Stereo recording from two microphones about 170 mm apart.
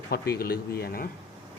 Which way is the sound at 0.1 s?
65° left (ahead or behind).